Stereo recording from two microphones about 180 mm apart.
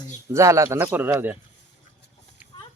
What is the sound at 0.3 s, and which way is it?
Speech, 15° right (ahead or behind).